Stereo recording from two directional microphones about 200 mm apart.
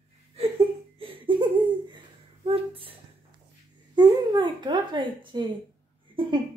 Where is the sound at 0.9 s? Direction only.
25° right (ahead or behind).